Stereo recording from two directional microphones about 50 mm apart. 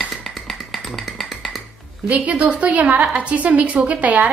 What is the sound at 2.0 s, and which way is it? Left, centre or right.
A woman's voice, right.